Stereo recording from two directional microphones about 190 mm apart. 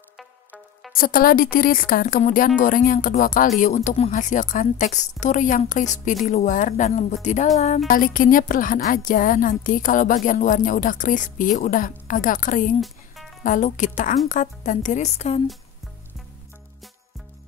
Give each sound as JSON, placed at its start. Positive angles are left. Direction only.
{"t": 0.2, "sound": "music", "side_deg": 0}
{"t": 0.9, "sound": "a woman's voice", "side_deg": 50}
{"t": 12.8, "sound": "music", "side_deg": 0}
{"t": 13.4, "sound": "a woman's voice", "side_deg": 40}